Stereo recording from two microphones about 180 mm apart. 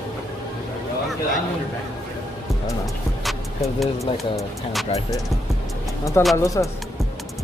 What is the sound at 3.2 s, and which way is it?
Music, centre (ahead or behind).